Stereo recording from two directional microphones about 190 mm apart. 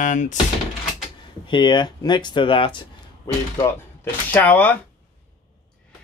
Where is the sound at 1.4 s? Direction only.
25° left (ahead or behind); by 4.8 s 10° left (ahead or behind).